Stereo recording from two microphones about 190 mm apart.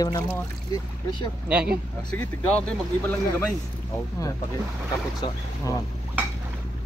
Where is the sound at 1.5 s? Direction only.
5° right (ahead or behind).